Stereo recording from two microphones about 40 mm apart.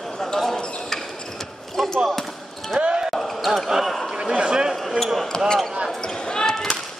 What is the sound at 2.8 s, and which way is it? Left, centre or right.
Basketball bounce, centre.